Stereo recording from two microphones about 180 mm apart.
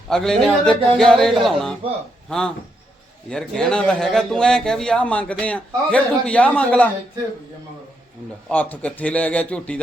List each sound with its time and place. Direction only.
0.1 s a man's voice: centre (ahead or behind)
3.2 s a man's voice: 5° left (ahead or behind)
8.4 s a man's voice: 5° left (ahead or behind)